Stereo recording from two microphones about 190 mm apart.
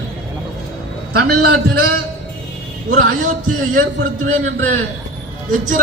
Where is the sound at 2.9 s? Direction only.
45° right (ahead or behind).